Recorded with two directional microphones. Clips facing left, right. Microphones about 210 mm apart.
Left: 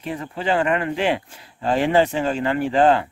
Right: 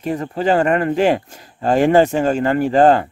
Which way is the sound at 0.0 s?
40° right (ahead or behind).